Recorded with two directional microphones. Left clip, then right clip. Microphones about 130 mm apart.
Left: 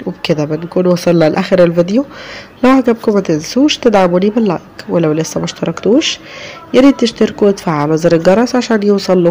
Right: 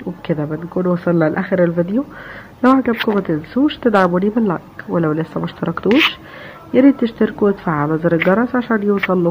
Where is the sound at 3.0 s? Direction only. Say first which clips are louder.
Left 5 dB; 35° left (ahead or behind).